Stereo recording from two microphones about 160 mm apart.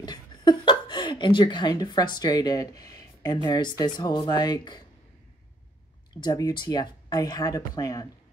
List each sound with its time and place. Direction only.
0.0 s a sound: 25° left (ahead or behind)
3.4 s speech: 25° left (ahead or behind)
6.2 s speech: 25° left (ahead or behind)